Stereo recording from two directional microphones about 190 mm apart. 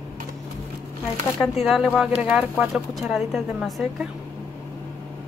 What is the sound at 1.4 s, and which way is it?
Speech, centre (ahead or behind).